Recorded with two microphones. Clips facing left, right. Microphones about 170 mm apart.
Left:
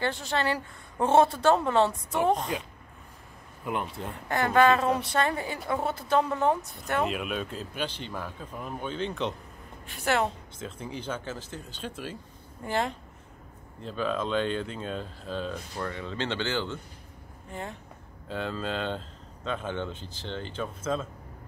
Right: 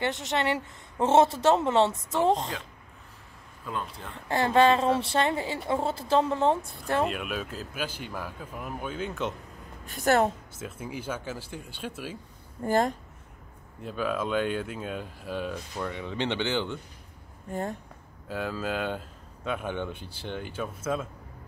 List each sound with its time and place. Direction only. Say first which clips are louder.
0.0 s speech: right 1 dB; 20° right (ahead or behind)
3.6 s speech: left 3 dB; 20° left (ahead or behind)
4.1 s speech: right 2 dB; 25° right (ahead or behind)
7.1 s speech: left 1 dB; centre (ahead or behind)
9.8 s a woman's voice: right 4 dB; 40° right (ahead or behind)
10.6 s speech: even; 10° right (ahead or behind)
12.6 s a woman's voice: right 5 dB; 45° right (ahead or behind)
13.7 s speech: even; 10° right (ahead or behind)
17.5 s a woman's voice: right 6 dB; 45° right (ahead or behind)
18.3 s speech: right 1 dB; 5° right (ahead or behind)